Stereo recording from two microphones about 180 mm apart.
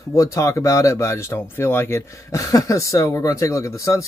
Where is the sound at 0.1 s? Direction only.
15° left (ahead or behind).